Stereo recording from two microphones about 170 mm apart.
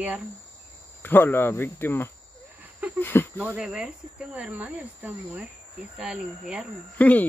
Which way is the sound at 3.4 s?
5° right (ahead or behind).